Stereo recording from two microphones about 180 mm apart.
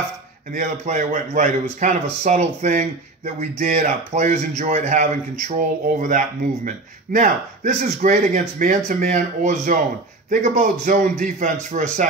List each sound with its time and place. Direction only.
0.5 s a man's voice: 45° right (ahead or behind)